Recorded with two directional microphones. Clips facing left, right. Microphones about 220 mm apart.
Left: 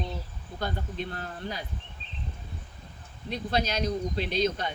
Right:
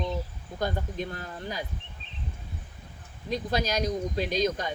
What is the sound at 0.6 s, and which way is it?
Speech, 40° right (ahead or behind).